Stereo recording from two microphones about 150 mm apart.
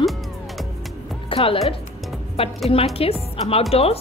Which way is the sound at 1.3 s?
35° left (ahead or behind).